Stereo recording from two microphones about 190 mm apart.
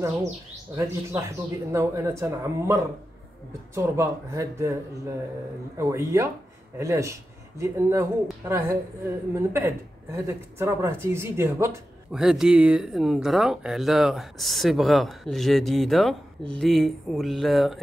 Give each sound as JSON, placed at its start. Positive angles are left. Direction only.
{"t": 0.7, "sound": "speech", "side_deg": -15}